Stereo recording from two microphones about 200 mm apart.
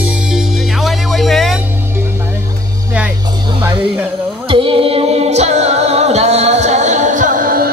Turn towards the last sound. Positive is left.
turn(degrees=-45)  # may be behind; listen again after turning